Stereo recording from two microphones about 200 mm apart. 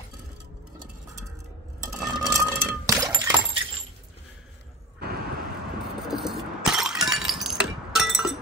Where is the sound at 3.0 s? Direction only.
20° right (ahead or behind).